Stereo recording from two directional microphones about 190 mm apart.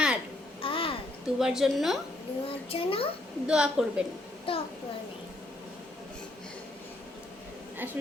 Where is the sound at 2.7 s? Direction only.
30° left (ahead or behind).